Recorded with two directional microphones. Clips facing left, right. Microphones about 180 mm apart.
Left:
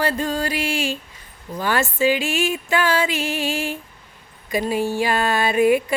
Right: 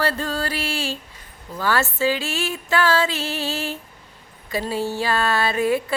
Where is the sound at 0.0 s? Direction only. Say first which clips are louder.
Left 2 dB; 15° left (ahead or behind).